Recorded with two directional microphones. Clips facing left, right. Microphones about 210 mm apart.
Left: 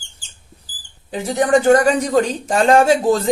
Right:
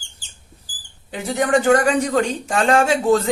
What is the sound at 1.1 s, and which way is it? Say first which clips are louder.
Speech: left 3 dB; 35° left (ahead or behind).